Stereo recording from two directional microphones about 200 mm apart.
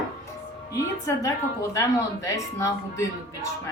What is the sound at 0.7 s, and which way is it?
A woman's voice, 15° left (ahead or behind).